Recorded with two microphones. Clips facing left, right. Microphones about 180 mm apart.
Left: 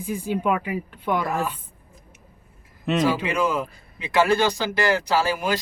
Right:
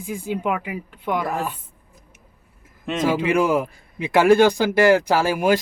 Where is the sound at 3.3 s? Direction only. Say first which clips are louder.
Right 5 dB; 55° right (ahead or behind).